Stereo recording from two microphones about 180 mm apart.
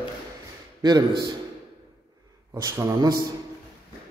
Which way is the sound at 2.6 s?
15° right (ahead or behind).